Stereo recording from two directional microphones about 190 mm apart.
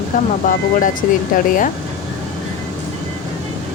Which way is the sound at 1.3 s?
45° left (ahead or behind).